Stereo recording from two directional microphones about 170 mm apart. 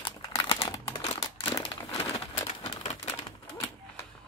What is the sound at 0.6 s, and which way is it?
Crumpling, 20° left (ahead or behind).